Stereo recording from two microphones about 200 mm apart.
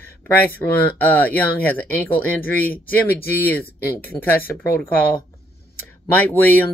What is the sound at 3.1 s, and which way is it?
Speech, 50° left (ahead or behind).